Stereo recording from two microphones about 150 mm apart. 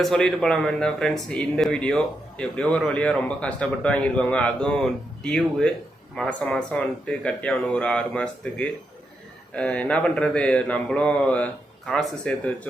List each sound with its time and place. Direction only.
0.0 s speech: centre (ahead or behind)